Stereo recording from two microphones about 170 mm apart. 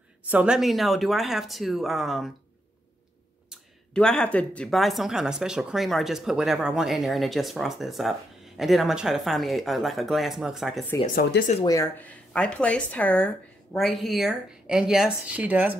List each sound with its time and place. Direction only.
0.3 s speech: 5° right (ahead or behind)
3.4 s speech: 5° left (ahead or behind)
11.1 s speech: 60° left (ahead or behind)
11.6 s speech: 15° left (ahead or behind); by 15.7 s 10° right (ahead or behind)